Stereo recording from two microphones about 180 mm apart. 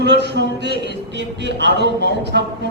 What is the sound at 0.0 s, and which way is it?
A woman's voice, 70° right (ahead or behind).